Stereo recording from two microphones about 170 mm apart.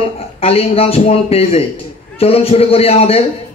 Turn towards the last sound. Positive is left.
turn(degrees=35)  # may be behind; listen again after turning